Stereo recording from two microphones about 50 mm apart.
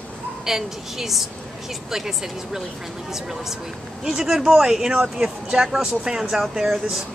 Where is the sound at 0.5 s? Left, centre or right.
Centre.